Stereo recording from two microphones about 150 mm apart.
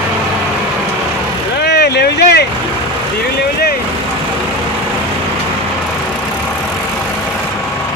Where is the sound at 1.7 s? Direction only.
90° left.